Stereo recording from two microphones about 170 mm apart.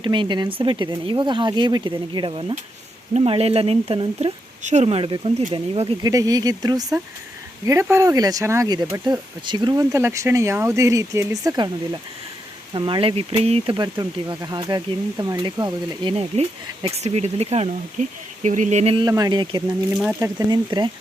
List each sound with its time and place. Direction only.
0.0 s speech: 30° right (ahead or behind)
6.0 s speech: 20° right (ahead or behind); by 19.0 s 40° right (ahead or behind)
19.0 s speech: 20° right (ahead or behind)